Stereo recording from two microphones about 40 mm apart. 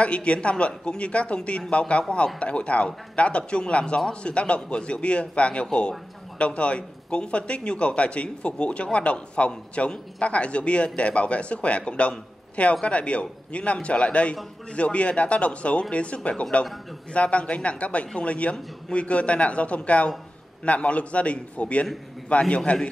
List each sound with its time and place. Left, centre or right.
0.0 s a man's voice: left